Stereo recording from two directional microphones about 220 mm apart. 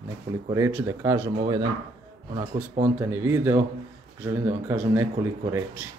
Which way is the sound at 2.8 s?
10° right (ahead or behind).